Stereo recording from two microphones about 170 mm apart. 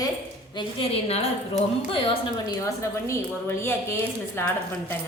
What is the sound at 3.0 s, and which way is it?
Speech, 15° left (ahead or behind).